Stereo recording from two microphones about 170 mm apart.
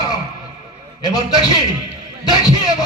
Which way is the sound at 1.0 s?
25° left (ahead or behind).